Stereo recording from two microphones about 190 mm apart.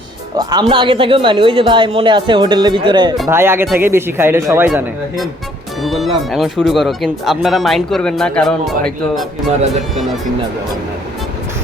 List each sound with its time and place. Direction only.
0.3 s speech: 25° right (ahead or behind)
3.2 s speech: 10° right (ahead or behind)